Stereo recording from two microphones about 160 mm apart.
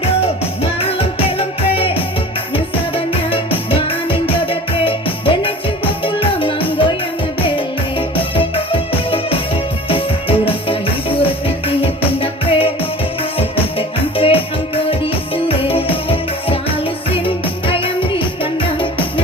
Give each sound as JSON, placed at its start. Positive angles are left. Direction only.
{"t": 0.6, "sound": "music", "side_deg": 35}